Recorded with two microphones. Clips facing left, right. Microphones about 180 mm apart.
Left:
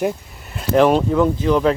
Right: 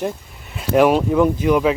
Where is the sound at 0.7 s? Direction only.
10° right (ahead or behind).